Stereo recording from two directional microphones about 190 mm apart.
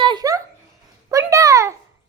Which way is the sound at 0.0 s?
20° right (ahead or behind).